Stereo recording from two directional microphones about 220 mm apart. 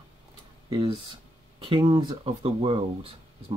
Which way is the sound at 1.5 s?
20° right (ahead or behind).